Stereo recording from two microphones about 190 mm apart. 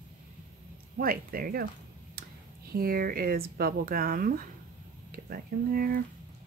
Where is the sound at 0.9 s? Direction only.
50° right (ahead or behind).